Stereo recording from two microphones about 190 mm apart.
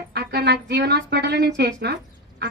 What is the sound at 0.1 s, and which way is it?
A woman's voice, 60° right (ahead or behind).